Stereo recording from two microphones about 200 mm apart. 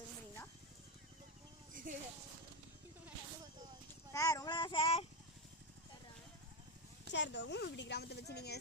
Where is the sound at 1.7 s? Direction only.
40° right (ahead or behind).